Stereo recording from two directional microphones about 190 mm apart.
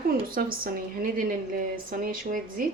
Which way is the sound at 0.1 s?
50° right (ahead or behind).